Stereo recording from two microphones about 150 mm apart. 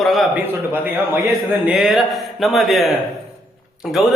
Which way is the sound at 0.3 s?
15° right (ahead or behind).